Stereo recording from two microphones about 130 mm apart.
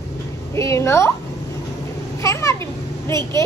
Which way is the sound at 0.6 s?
20° left (ahead or behind).